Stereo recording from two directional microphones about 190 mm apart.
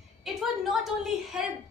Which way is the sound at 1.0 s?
Centre (ahead or behind).